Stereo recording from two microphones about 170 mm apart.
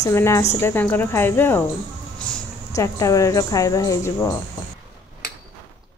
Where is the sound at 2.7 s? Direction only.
20° left (ahead or behind).